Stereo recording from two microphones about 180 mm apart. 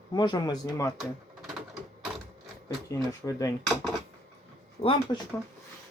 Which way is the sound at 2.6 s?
20° left (ahead or behind).